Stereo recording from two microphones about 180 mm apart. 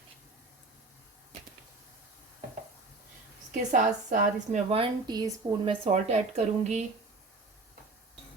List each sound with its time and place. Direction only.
3.7 s a woman's voice: 45° right (ahead or behind)
4.8 s speech: 20° right (ahead or behind)
5.8 s a woman's voice: 40° right (ahead or behind)